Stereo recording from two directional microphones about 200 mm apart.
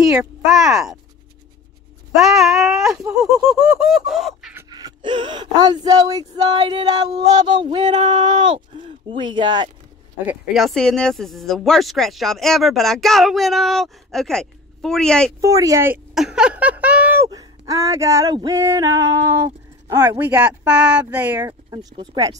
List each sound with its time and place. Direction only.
0.5 s speech: centre (ahead or behind)
2.1 s speech: centre (ahead or behind)
4.6 s speech: 20° right (ahead or behind)
10.2 s speech: centre (ahead or behind)
15.4 s speech: 15° right (ahead or behind)
21.4 s speech: 15° right (ahead or behind)